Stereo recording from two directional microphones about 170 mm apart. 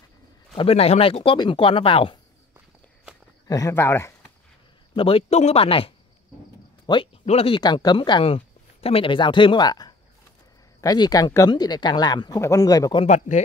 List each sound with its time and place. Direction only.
0.6 s speech: 35° left (ahead or behind)
3.4 s speech: 20° left (ahead or behind)
4.9 s speech: 30° left (ahead or behind)
13.0 s speech: 45° left (ahead or behind)